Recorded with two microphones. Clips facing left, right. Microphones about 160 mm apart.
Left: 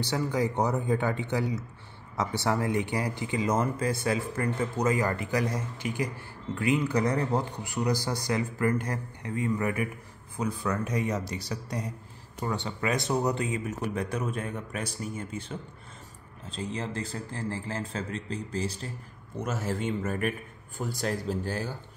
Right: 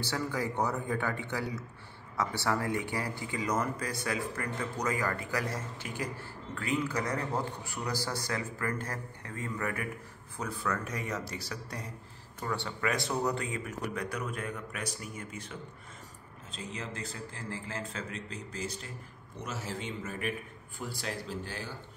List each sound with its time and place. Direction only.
0.0 s a man's voice: 20° left (ahead or behind)
19.3 s a man's voice: 50° left (ahead or behind)